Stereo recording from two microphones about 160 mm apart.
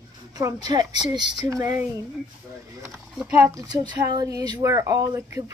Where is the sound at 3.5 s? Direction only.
25° right (ahead or behind).